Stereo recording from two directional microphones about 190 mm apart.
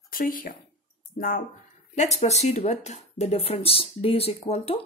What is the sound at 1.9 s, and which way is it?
Speech, 35° left (ahead or behind).